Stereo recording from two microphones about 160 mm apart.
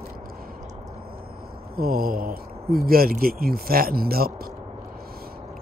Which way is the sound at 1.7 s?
70° right (ahead or behind).